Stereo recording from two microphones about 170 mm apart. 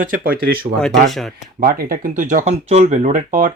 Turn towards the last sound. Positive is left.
turn(degrees=-50)  # may be behind; listen again after turning